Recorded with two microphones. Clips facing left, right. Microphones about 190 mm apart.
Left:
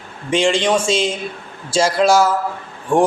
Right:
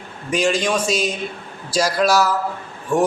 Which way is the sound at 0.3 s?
25° left (ahead or behind).